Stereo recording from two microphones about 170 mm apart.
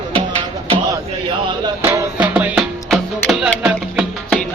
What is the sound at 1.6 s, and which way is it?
Music, 20° right (ahead or behind).